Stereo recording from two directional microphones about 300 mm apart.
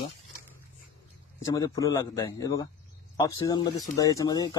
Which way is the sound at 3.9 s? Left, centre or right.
Centre.